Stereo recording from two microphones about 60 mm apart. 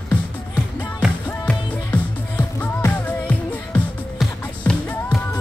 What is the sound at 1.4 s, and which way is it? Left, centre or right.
Music, left.